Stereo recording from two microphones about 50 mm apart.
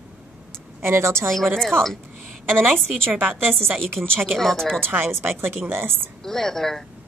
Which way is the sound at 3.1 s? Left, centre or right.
Right.